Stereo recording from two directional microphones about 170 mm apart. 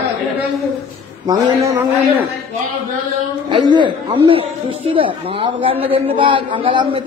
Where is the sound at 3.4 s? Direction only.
25° right (ahead or behind).